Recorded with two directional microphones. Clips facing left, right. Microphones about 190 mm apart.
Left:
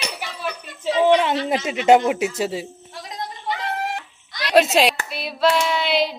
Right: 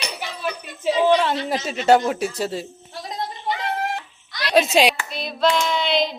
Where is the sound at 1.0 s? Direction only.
15° left (ahead or behind).